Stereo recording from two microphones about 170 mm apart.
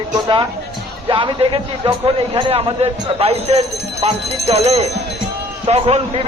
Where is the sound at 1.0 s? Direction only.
30° right (ahead or behind).